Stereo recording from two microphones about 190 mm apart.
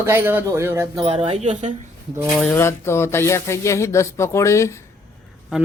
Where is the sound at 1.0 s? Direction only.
30° right (ahead or behind).